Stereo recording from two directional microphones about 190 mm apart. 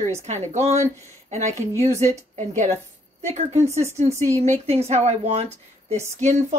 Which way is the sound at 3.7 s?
15° right (ahead or behind).